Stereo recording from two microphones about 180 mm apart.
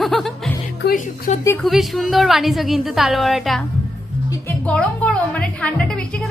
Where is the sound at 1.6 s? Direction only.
Centre (ahead or behind).